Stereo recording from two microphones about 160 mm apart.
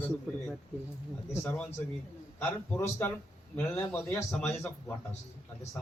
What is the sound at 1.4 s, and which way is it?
Speech, 5° left (ahead or behind).